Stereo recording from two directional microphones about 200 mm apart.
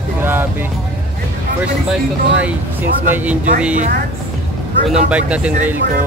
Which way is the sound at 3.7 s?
40° right (ahead or behind).